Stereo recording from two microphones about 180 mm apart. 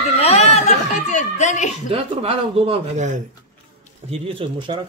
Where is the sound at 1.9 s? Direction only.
30° right (ahead or behind).